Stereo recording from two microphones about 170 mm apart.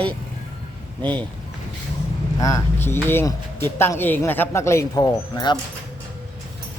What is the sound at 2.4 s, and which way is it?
Speech, 20° left (ahead or behind).